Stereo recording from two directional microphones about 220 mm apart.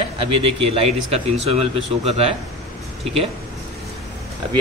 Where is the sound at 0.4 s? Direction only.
25° right (ahead or behind).